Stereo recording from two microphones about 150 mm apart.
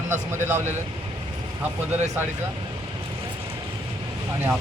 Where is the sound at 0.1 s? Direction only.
15° right (ahead or behind).